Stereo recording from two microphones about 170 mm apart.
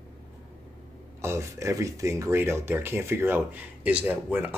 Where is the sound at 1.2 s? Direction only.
15° right (ahead or behind).